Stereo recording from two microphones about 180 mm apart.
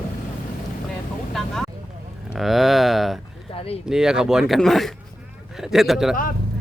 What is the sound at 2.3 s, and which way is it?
Speech, centre (ahead or behind).